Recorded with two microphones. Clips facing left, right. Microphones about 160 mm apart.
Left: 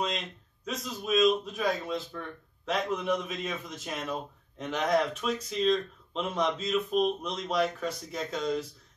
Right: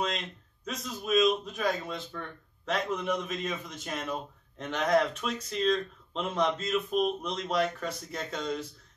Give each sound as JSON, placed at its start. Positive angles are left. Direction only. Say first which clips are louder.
{"t": 0.7, "sound": "a man's voice", "louder": "even", "side_deg": 0}